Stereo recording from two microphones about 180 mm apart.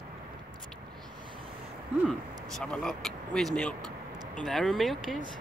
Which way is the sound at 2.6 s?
5° left (ahead or behind).